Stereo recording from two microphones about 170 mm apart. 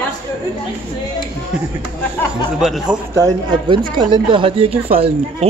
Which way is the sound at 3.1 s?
20° right (ahead or behind).